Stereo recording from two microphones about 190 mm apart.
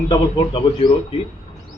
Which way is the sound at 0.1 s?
25° left (ahead or behind).